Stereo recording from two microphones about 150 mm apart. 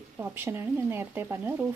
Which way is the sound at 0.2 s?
15° right (ahead or behind).